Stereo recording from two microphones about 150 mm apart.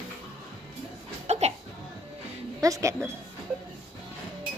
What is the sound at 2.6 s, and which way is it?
Speech, 20° right (ahead or behind).